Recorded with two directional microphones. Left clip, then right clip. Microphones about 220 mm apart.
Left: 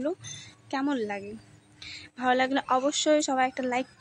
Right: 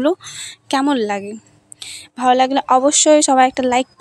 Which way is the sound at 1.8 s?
30° right (ahead or behind).